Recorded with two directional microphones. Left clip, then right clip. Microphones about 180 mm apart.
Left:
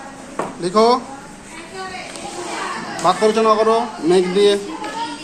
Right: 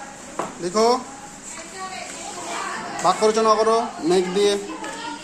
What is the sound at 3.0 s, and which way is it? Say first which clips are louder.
A man's voice: left 3 dB; 15° right (ahead or behind).